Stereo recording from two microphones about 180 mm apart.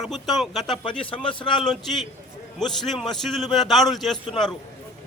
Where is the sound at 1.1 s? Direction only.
30° left (ahead or behind).